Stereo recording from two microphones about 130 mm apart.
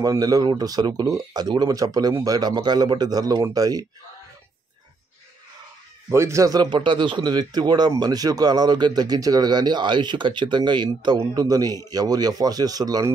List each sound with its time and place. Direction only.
0.0 s a man's voice: 30° right (ahead or behind)
6.1 s a man's voice: 20° right (ahead or behind)